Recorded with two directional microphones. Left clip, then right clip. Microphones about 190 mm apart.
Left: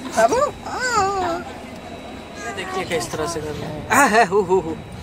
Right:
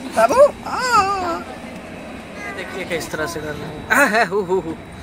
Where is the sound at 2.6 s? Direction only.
5° right (ahead or behind).